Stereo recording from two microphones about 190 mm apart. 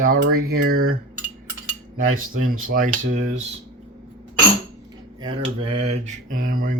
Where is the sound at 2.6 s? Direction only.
45° right (ahead or behind).